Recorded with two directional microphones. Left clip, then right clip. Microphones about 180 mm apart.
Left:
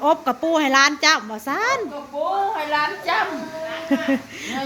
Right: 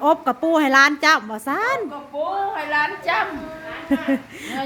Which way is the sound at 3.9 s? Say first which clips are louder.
Even; 20° right (ahead or behind).